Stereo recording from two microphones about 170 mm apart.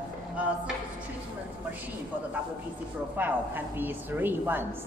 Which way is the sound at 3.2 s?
10° right (ahead or behind).